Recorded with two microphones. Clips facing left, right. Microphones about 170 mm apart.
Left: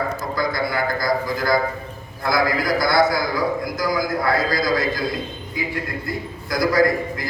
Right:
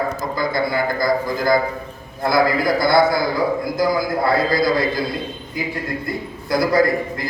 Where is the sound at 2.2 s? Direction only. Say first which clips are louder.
Right 3 dB; 25° right (ahead or behind).